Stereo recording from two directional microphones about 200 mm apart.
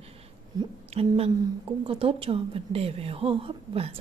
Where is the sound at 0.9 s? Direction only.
30° right (ahead or behind).